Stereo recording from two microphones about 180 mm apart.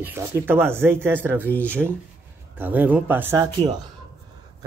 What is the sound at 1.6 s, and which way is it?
A man's voice, 10° right (ahead or behind).